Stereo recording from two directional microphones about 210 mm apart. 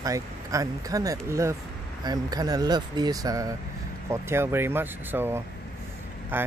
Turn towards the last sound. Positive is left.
turn(degrees=-10)  # may be behind; listen again after turning